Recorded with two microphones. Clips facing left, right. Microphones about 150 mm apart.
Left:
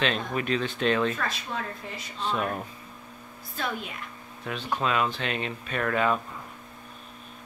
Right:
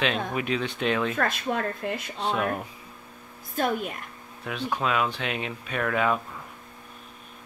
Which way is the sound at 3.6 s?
50° right (ahead or behind).